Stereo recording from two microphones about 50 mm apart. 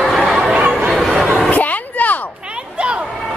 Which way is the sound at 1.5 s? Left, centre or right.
Left.